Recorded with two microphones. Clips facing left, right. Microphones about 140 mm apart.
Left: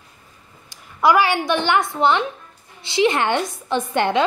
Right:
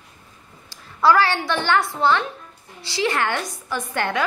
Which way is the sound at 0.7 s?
15° left (ahead or behind).